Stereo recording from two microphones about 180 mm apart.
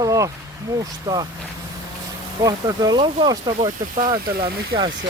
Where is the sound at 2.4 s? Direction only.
20° right (ahead or behind).